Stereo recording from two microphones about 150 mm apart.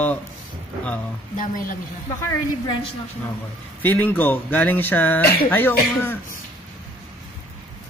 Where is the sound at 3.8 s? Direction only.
10° left (ahead or behind).